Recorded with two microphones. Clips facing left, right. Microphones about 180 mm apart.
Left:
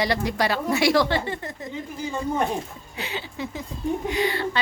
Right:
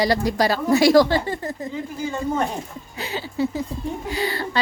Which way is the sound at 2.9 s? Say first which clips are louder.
Right 6 dB; 35° right (ahead or behind).